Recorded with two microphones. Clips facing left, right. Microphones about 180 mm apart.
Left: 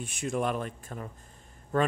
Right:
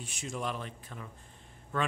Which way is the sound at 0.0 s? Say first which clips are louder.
Left 7 dB; 55° left (ahead or behind).